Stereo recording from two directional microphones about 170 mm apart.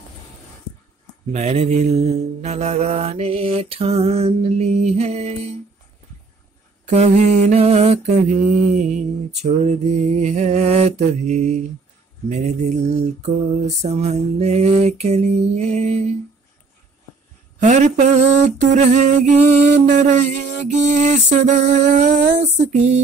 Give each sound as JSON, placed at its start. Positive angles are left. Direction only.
{"t": 1.3, "sound": "mantra", "side_deg": -40}
{"t": 6.9, "sound": "mantra", "side_deg": -40}
{"t": 17.6, "sound": "a sound", "side_deg": -45}